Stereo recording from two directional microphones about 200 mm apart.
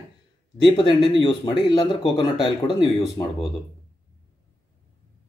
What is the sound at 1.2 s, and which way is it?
Speech, 20° left (ahead or behind).